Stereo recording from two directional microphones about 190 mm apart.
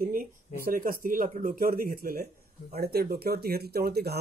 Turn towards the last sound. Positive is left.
turn(degrees=-55)  # may be behind; listen again after turning